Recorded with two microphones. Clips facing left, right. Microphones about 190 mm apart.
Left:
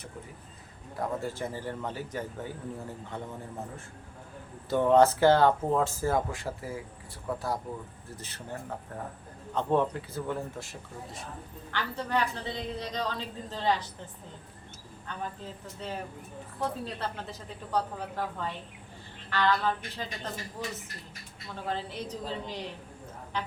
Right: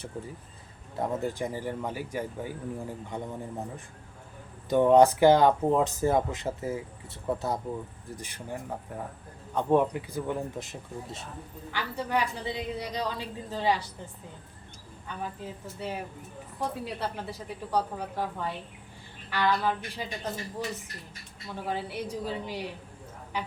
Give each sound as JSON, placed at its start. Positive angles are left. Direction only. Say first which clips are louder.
{"t": 0.9, "sound": "speech", "louder": "right 3 dB", "side_deg": -15}
{"t": 4.7, "sound": "speech", "louder": "right 2 dB", "side_deg": -15}
{"t": 11.7, "sound": "speech", "louder": "right 1 dB", "side_deg": -10}
{"t": 15.0, "sound": "speech", "louder": "right 1 dB", "side_deg": -10}
{"t": 21.5, "sound": "speech", "louder": "right 2 dB", "side_deg": -10}